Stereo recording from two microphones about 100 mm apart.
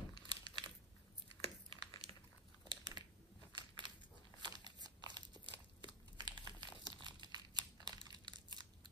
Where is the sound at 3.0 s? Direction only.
50° right (ahead or behind).